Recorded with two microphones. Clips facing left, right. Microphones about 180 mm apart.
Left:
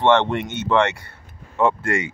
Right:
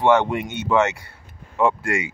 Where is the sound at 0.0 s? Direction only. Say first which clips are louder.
Even; 10° right (ahead or behind).